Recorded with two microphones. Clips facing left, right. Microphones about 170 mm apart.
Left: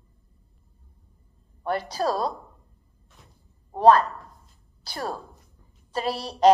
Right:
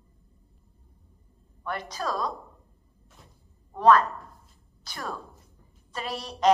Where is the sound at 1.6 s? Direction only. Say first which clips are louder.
Left 7 dB; 35° left (ahead or behind).